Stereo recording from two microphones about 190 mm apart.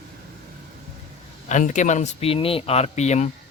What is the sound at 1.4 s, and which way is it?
Speech, 40° left (ahead or behind).